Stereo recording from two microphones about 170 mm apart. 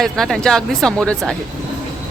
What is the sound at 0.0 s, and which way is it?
Speech, centre (ahead or behind).